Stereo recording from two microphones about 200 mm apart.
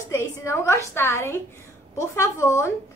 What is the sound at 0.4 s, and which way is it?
A woman's voice, 15° left (ahead or behind).